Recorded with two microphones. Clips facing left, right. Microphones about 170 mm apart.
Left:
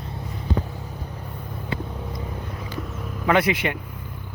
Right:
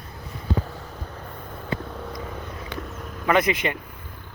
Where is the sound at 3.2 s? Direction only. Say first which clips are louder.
Left 1 dB; 10° left (ahead or behind).